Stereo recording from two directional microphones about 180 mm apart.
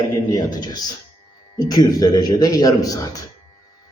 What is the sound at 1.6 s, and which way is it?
A man's voice, 20° left (ahead or behind).